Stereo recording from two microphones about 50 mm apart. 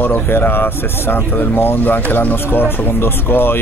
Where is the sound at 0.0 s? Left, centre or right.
Left.